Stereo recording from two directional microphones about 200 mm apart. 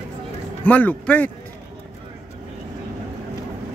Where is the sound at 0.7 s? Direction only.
10° left (ahead or behind).